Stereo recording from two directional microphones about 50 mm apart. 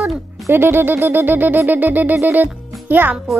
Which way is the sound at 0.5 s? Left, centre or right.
Right.